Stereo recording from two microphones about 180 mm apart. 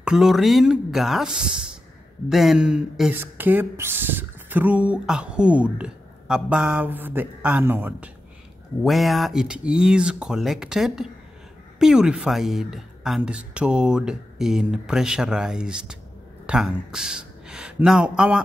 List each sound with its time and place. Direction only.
0.0 s speech: 5° right (ahead or behind)
8.8 s speech: centre (ahead or behind)